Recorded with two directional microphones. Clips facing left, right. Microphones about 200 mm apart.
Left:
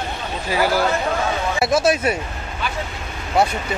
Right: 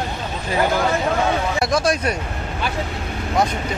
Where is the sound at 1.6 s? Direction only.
5° left (ahead or behind).